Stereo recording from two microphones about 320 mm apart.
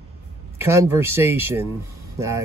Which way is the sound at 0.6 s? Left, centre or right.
Centre.